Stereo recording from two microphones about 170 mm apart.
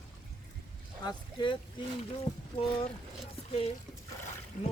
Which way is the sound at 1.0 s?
25° left (ahead or behind).